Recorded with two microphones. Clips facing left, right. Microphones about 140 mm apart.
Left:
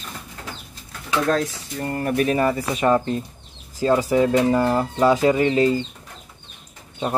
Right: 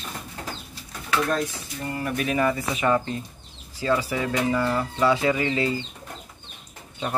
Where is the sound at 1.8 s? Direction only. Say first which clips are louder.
Left 6 dB; 45° left (ahead or behind).